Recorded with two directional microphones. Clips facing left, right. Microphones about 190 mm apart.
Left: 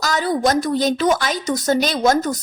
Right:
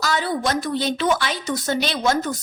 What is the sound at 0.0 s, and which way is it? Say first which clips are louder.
A woman's voice: left 4 dB; 40° left (ahead or behind).